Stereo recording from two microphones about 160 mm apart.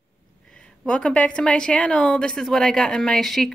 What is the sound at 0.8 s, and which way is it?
A woman's voice, 5° left (ahead or behind).